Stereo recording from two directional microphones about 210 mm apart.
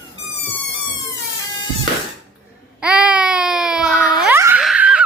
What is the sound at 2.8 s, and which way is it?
Baby cry, 5° right (ahead or behind).